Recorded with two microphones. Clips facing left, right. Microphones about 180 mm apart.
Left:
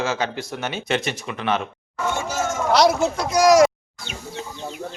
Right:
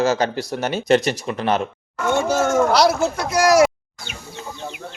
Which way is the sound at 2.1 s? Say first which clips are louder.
Right 9 dB; 60° right (ahead or behind).